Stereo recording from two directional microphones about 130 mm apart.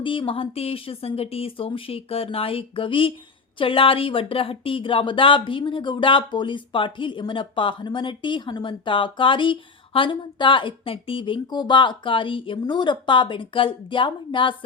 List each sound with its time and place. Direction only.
0.0 s speech: 40° left (ahead or behind)